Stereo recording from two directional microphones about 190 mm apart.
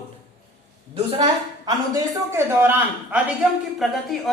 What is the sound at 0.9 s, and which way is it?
Speech, 30° right (ahead or behind).